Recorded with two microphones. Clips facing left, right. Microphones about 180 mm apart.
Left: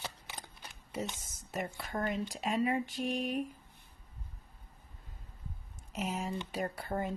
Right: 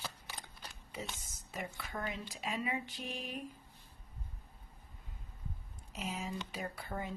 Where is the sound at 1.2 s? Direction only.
45° left (ahead or behind).